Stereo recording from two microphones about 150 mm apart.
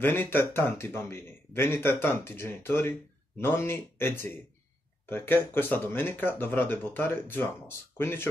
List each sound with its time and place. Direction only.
0.0 s speech: 15° left (ahead or behind)